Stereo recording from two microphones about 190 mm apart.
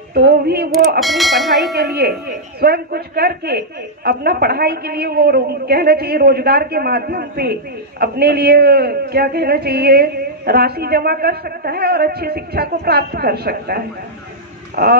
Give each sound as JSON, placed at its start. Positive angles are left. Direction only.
{"t": 0.1, "sound": "speech", "side_deg": -55}
{"t": 0.9, "sound": "speech", "side_deg": 0}
{"t": 1.8, "sound": "a man's voice", "side_deg": -55}